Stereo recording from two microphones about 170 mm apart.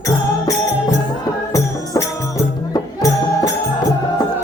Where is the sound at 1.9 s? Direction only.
20° left (ahead or behind).